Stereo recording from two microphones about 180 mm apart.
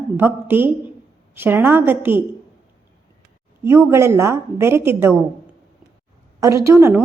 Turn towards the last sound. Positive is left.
turn(degrees=-15)  # may be behind; listen again after turning